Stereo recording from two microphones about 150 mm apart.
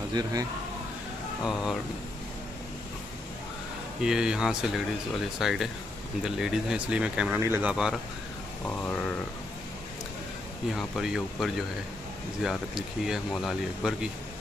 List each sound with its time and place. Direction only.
0.1 s speech: 25° right (ahead or behind)
1.4 s speech: centre (ahead or behind)
4.0 s speech: 5° right (ahead or behind)
8.6 s a sound: 10° left (ahead or behind)
10.7 s speech: centre (ahead or behind)